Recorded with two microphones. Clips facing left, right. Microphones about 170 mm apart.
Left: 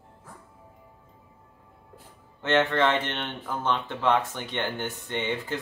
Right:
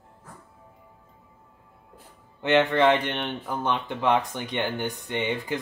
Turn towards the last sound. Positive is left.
turn(degrees=-15)  # may be behind; listen again after turning